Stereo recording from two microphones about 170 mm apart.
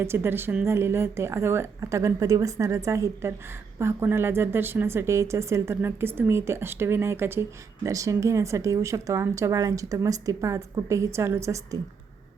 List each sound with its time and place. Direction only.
0.0 s speech: 15° right (ahead or behind)